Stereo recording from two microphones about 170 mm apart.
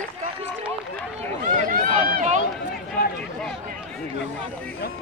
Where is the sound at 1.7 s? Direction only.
45° right (ahead or behind).